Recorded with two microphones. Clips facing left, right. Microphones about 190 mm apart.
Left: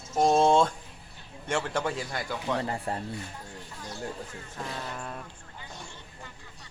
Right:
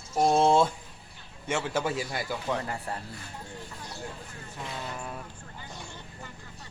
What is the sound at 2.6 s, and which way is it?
Speech, 30° left (ahead or behind).